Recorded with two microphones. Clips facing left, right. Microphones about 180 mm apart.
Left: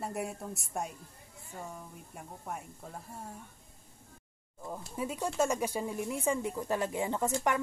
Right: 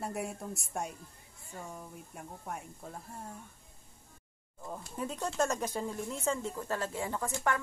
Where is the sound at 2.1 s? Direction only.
Centre (ahead or behind).